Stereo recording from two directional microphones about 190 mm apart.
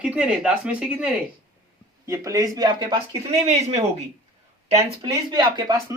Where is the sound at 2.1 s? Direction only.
15° right (ahead or behind); by 3.8 s 35° right (ahead or behind).